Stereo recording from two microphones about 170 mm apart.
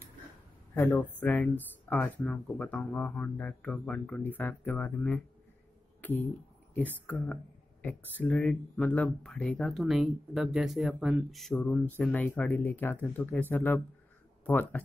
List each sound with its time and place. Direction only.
0.7 s speech: 10° left (ahead or behind)
6.0 s a sound: 10° left (ahead or behind)
7.8 s speech: 10° left (ahead or behind)